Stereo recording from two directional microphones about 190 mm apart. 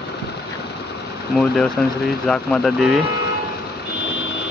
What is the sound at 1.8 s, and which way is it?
Speech, 5° left (ahead or behind).